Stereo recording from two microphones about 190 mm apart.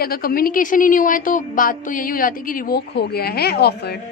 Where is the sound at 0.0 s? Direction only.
50° left (ahead or behind).